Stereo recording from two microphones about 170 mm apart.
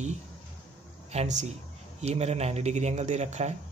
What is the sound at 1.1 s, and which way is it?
Speech, 40° right (ahead or behind).